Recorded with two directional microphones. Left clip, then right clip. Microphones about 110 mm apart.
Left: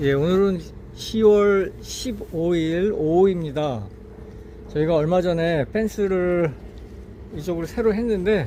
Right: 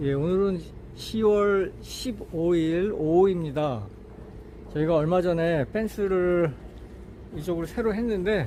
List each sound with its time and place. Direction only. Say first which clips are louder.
0.0 s speech: left 6 dB; 15° left (ahead or behind)